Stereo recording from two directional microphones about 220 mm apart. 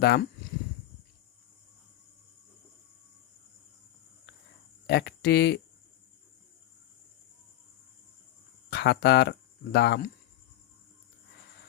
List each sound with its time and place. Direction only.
0.0 s speech: 45° left (ahead or behind)
4.9 s speech: 50° left (ahead or behind)
8.7 s speech: 50° left (ahead or behind)